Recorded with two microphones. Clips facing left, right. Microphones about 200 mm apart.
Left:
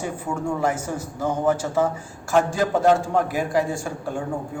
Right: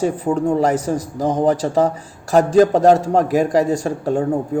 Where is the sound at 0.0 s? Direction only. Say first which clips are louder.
Right 9 dB; 35° right (ahead or behind).